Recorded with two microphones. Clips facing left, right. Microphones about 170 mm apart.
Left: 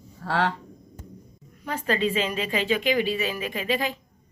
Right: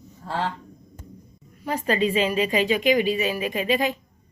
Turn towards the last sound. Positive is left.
turn(degrees=-15)  # may be behind; listen again after turning